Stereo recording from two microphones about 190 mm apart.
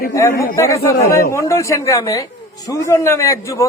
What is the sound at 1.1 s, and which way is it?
Speech, 50° left (ahead or behind).